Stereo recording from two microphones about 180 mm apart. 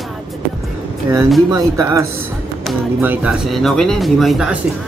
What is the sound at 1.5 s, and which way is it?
Speech, 20° right (ahead or behind).